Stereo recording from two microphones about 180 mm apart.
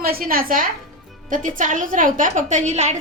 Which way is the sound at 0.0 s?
55° right (ahead or behind).